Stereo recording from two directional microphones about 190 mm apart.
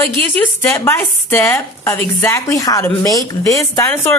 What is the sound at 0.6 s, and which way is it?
Speech, 10° left (ahead or behind).